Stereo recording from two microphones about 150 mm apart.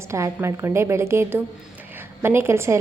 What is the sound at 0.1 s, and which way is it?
A woman's voice, 20° right (ahead or behind).